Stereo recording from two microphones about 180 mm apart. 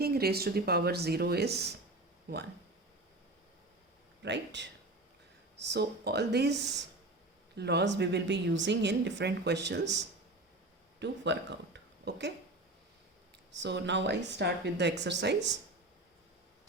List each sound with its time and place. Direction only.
0.0 s speech: 60° right (ahead or behind)
4.2 s a woman's voice: 75° right (ahead or behind)
11.0 s speech: 75° right (ahead or behind)
13.6 s a woman's voice: 75° right (ahead or behind)